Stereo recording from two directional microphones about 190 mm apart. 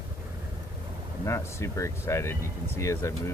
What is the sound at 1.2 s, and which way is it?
Speech, 15° left (ahead or behind).